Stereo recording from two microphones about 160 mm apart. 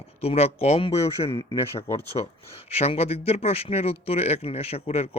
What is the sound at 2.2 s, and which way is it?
Speech, 35° left (ahead or behind).